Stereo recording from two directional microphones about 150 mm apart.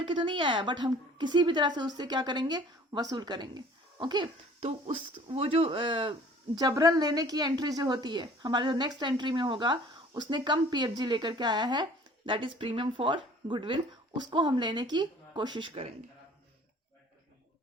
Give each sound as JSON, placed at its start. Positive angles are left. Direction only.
{"t": 0.0, "sound": "a woman's voice", "side_deg": -35}
{"t": 6.6, "sound": "a woman's voice", "side_deg": -25}